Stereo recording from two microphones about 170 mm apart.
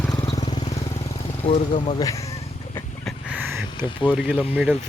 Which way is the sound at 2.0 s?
20° left (ahead or behind).